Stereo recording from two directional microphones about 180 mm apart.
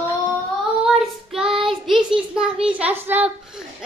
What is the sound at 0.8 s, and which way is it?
Child singing, centre (ahead or behind).